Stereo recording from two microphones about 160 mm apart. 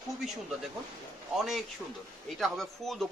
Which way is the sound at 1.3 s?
Centre (ahead or behind).